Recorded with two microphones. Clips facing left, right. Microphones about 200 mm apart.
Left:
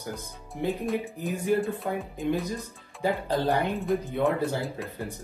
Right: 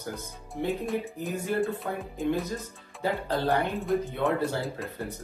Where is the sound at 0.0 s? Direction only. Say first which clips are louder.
Even; 15° left (ahead or behind).